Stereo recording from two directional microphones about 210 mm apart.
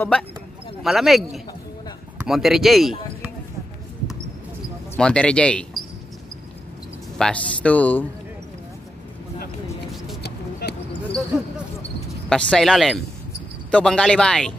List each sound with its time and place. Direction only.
0.8 s speech: centre (ahead or behind)
4.9 s speech: 5° left (ahead or behind)
7.2 s speech: 5° left (ahead or behind)
10.2 s a sound: 50° left (ahead or behind)
11.3 s a sound: 5° right (ahead or behind)
12.3 s speech: 5° left (ahead or behind)